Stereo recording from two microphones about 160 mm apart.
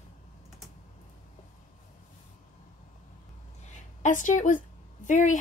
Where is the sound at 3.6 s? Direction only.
50° left (ahead or behind).